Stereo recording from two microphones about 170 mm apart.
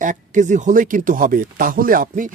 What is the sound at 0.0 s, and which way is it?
Speech, 45° right (ahead or behind).